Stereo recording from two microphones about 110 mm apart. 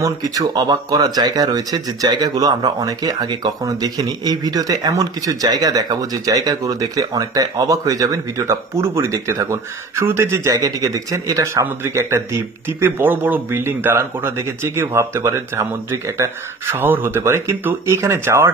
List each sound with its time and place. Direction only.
0.0 s speech: 35° right (ahead or behind)